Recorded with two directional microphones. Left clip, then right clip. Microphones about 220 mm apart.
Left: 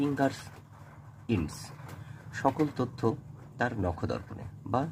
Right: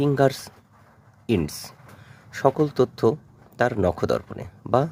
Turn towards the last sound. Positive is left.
turn(degrees=-45)  # may be behind; listen again after turning